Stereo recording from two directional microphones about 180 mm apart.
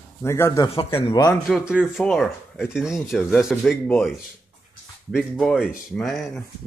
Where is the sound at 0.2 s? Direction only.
15° left (ahead or behind).